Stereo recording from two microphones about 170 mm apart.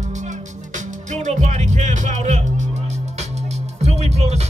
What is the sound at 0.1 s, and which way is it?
Music, 45° right (ahead or behind).